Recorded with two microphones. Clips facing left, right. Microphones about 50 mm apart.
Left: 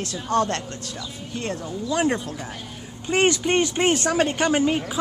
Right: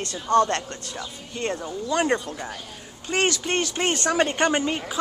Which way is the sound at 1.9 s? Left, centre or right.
Centre.